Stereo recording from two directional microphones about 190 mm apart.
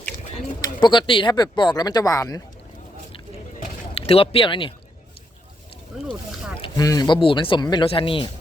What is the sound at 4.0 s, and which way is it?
Speech, 30° left (ahead or behind).